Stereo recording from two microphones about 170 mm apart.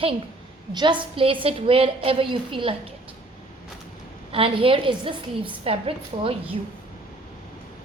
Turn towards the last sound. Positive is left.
turn(degrees=-35)  # may be behind; listen again after turning